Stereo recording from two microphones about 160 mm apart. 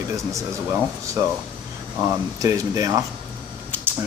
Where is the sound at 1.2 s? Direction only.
20° right (ahead or behind).